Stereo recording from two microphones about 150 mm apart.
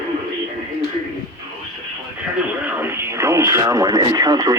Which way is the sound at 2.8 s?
15° right (ahead or behind).